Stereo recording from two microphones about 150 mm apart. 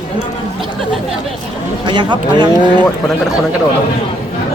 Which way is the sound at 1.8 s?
30° right (ahead or behind).